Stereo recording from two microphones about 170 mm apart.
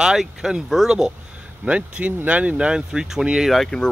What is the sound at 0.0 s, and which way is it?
Speech, 5° right (ahead or behind).